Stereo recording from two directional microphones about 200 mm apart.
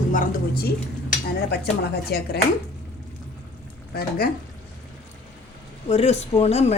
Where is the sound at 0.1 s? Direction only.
45° left (ahead or behind).